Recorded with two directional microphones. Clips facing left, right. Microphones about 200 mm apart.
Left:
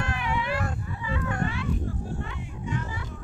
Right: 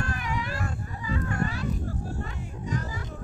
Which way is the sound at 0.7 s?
40° right (ahead or behind).